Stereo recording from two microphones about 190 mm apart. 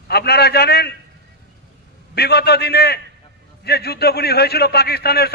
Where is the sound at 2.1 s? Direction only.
55° left (ahead or behind).